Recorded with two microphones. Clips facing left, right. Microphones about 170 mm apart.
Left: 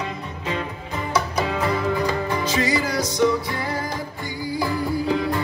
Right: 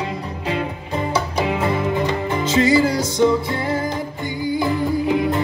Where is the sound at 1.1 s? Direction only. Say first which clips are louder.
Even; 25° right (ahead or behind).